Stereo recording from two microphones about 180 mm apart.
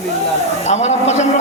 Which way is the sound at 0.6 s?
40° left (ahead or behind).